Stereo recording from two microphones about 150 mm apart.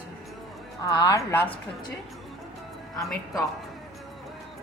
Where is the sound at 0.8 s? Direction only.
25° left (ahead or behind).